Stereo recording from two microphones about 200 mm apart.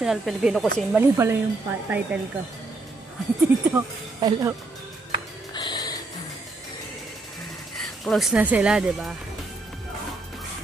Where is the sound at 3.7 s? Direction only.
20° right (ahead or behind).